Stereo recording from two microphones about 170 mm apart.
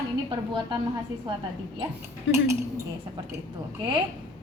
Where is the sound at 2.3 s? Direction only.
90° left.